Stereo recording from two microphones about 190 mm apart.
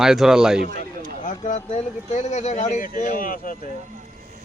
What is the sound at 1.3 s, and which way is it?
Speech, 35° left (ahead or behind).